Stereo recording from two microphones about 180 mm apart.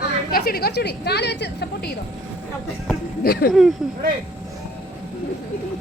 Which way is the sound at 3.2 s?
60° left (ahead or behind).